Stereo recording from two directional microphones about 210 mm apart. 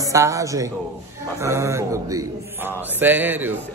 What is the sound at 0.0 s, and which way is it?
Speech, 15° right (ahead or behind).